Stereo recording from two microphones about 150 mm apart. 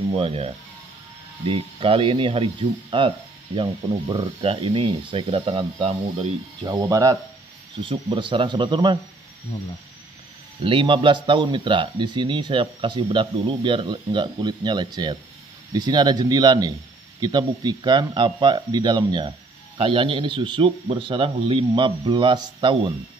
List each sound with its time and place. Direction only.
0.2 s speech: 40° right (ahead or behind)
6.6 s speech: 25° right (ahead or behind)
7.7 s speech: 35° right (ahead or behind)
10.6 s speech: 35° right (ahead or behind)